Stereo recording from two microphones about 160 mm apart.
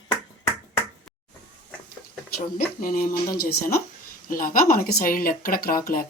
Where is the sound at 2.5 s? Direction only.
65° left (ahead or behind).